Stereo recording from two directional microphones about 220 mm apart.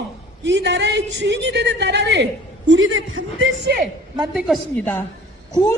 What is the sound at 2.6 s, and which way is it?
A woman's voice, 65° right (ahead or behind).